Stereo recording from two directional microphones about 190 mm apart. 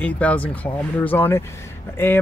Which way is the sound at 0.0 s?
5° left (ahead or behind).